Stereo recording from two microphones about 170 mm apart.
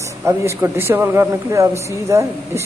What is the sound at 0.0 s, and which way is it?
Speech, 15° right (ahead or behind).